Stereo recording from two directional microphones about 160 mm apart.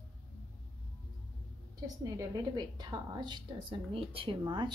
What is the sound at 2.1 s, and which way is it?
A woman's voice, 25° right (ahead or behind).